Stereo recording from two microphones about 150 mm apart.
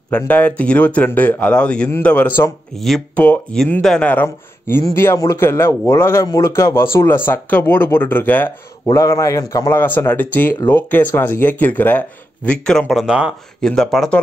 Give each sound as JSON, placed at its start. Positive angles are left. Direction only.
{"t": 0.1, "sound": "a man's voice", "side_deg": 10}